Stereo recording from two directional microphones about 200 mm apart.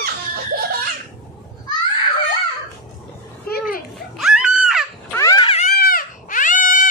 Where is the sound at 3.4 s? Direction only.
50° left (ahead or behind).